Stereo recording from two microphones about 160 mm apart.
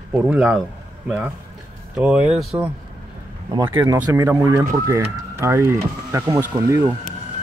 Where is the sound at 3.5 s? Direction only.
30° right (ahead or behind).